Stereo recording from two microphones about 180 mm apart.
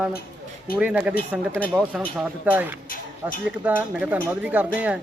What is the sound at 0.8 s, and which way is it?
Speech, 5° right (ahead or behind).